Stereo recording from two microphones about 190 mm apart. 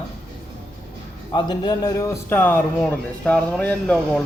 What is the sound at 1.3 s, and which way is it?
A man's voice, 25° left (ahead or behind).